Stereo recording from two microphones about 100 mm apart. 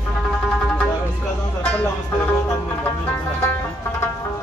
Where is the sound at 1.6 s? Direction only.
15° left (ahead or behind).